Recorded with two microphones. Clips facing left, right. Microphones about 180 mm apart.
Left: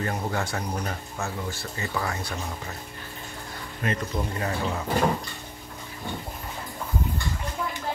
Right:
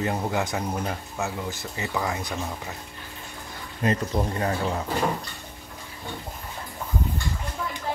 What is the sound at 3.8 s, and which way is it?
Speech, 30° right (ahead or behind).